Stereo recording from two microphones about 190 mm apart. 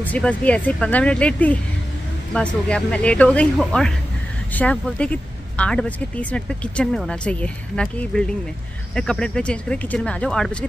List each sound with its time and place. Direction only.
0.0 s speech: 10° left (ahead or behind)